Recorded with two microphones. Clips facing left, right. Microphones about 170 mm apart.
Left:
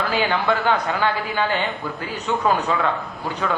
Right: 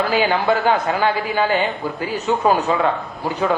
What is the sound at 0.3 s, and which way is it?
Speech, 20° right (ahead or behind).